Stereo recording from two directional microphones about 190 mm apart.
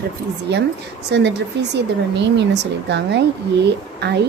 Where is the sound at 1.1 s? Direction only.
65° right (ahead or behind).